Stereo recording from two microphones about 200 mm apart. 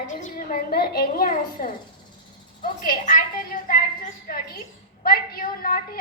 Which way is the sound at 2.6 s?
45° left (ahead or behind).